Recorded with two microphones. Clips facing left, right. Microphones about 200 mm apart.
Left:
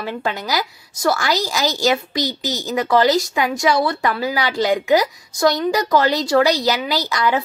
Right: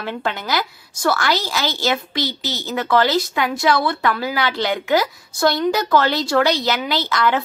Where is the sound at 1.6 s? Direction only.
40° left (ahead or behind).